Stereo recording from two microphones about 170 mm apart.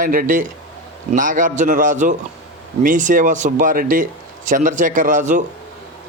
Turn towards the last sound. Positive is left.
turn(degrees=-45)  # may be behind; listen again after turning